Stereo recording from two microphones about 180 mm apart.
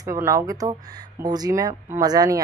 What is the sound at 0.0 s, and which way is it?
A woman's voice, 15° right (ahead or behind).